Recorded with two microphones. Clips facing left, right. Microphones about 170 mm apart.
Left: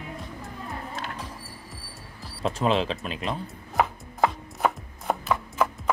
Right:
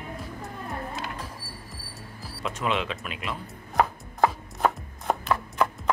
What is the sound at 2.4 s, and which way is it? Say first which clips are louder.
Speech: left 4 dB; 35° left (ahead or behind).